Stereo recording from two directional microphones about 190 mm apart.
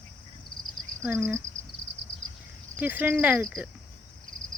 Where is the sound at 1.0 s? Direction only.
15° right (ahead or behind).